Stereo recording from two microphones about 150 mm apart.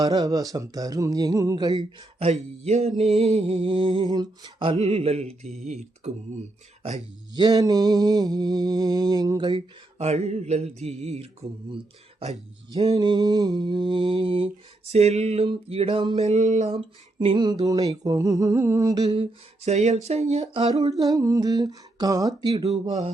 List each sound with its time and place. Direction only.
0.0 s mantra: 25° right (ahead or behind)
2.1 s a sound: 45° right (ahead or behind)
3.2 s mantra: 45° right (ahead or behind); by 4.7 s 25° right (ahead or behind)
4.8 s a sound: 45° right (ahead or behind)
5.6 s speech: 50° right (ahead or behind)
7.3 s mantra: 25° right (ahead or behind)
10.0 s a sound: 45° right (ahead or behind)
12.2 s mantra: 40° right (ahead or behind)
12.9 s mantra: 25° right (ahead or behind); by 16.6 s 50° right (ahead or behind)
17.2 s mantra: 35° right (ahead or behind)
19.6 s a sound: 50° right (ahead or behind)
21.0 s mantra: 25° right (ahead or behind)